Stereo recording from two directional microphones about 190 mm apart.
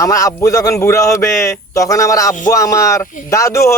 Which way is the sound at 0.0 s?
15° left (ahead or behind).